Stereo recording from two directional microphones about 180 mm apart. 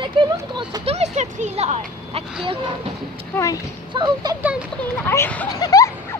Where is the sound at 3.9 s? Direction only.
25° right (ahead or behind).